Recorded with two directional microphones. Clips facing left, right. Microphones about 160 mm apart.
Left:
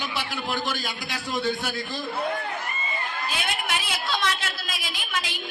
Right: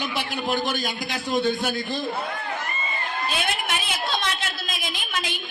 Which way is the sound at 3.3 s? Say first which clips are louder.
Right 2 dB; 20° right (ahead or behind).